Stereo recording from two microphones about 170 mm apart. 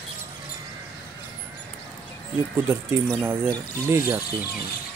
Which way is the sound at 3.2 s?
15° right (ahead or behind).